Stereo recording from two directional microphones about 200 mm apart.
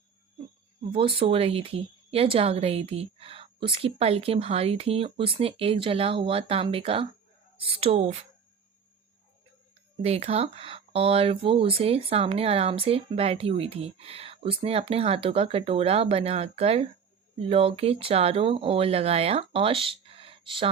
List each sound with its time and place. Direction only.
0.9 s speech: 25° right (ahead or behind)
10.0 s speech: 30° right (ahead or behind)